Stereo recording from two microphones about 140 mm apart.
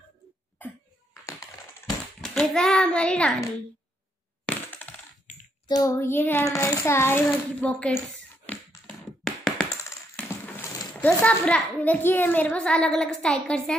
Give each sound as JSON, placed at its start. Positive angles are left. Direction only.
{"t": 0.6, "sound": "cough", "side_deg": 15}
{"t": 2.2, "sound": "a child's voice", "side_deg": 5}
{"t": 4.5, "sound": "coin", "side_deg": 10}
{"t": 5.8, "sound": "a child's voice", "side_deg": 20}
{"t": 9.2, "sound": "a sound", "side_deg": 0}
{"t": 10.1, "sound": "a sound", "side_deg": 15}
{"t": 11.0, "sound": "a child's voice", "side_deg": 15}